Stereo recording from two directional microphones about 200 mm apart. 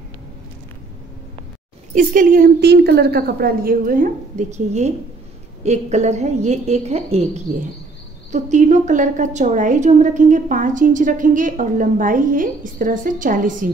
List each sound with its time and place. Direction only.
2.0 s a woman's voice: 40° right (ahead or behind)